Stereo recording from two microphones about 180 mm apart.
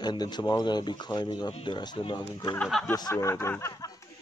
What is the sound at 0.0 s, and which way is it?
Speech, 25° left (ahead or behind).